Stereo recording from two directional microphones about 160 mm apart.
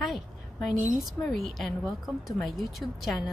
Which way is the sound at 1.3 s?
Centre (ahead or behind).